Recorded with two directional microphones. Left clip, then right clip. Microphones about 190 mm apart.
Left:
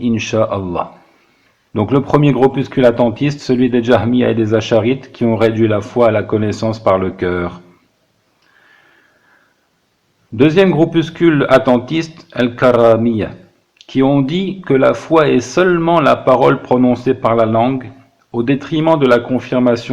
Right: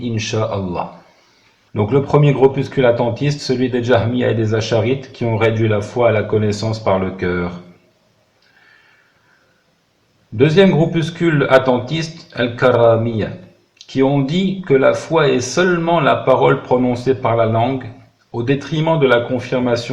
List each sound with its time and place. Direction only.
0.0 s speech: 45° left (ahead or behind)
10.3 s speech: 40° left (ahead or behind)